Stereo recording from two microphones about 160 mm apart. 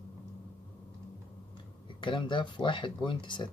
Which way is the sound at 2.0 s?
30° left (ahead or behind).